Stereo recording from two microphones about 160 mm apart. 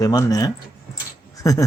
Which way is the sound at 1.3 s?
20° left (ahead or behind).